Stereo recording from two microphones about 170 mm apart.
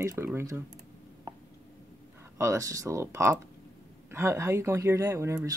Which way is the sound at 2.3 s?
20° right (ahead or behind).